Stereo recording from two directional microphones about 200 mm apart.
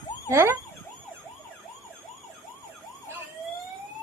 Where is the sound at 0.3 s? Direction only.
15° right (ahead or behind).